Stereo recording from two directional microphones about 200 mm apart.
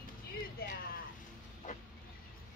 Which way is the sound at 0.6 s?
45° left (ahead or behind).